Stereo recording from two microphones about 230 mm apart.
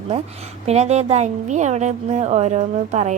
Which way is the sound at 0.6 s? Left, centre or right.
Right.